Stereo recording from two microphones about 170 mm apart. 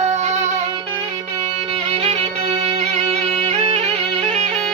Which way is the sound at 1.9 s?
35° right (ahead or behind).